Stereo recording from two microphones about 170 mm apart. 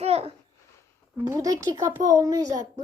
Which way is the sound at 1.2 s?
20° right (ahead or behind).